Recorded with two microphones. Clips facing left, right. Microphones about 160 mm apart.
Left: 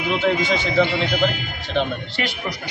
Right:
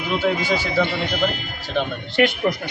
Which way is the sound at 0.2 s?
5° right (ahead or behind).